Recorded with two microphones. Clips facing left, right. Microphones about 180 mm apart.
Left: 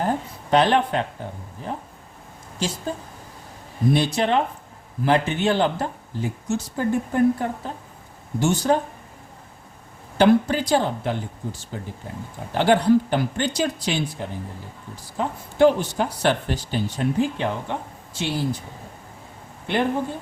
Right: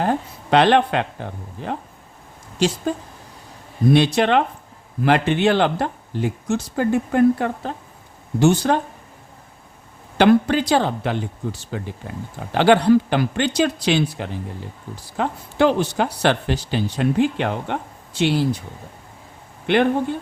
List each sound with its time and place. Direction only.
0.0 s speech: 75° right (ahead or behind)
3.9 s speech: 75° right (ahead or behind)
8.4 s speech: 70° right (ahead or behind)
10.2 s speech: 70° right (ahead or behind)
19.6 s speech: 75° right (ahead or behind)